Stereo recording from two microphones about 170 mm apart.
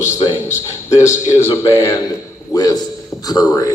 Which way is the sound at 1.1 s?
15° left (ahead or behind).